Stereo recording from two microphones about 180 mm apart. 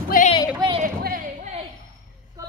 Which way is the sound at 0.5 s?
25° right (ahead or behind).